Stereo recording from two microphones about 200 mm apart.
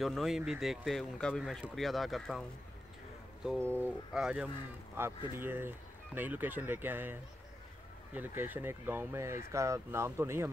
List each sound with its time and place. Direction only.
0.0 s speech: centre (ahead or behind)
3.4 s speech: 5° left (ahead or behind)
3.8 s speech: 5° right (ahead or behind)